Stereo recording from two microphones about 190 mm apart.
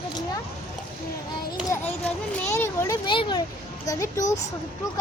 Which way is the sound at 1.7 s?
10° left (ahead or behind).